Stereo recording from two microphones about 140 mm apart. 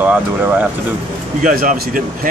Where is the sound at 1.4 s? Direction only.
80° right.